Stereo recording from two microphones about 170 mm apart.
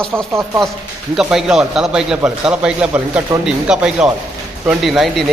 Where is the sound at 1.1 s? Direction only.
Centre (ahead or behind).